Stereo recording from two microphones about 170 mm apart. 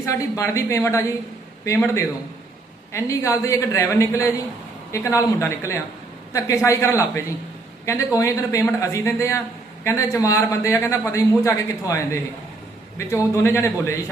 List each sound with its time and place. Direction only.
0.0 s a man's voice: 20° left (ahead or behind)